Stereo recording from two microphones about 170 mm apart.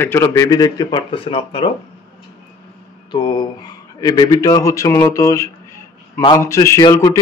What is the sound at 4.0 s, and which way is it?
A man's voice, 20° left (ahead or behind).